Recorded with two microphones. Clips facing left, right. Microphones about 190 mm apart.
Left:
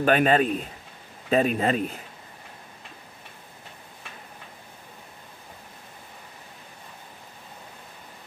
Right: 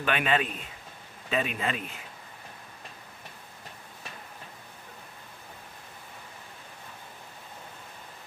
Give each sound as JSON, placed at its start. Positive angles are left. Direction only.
{"t": 0.0, "sound": "a man's voice", "side_deg": 40}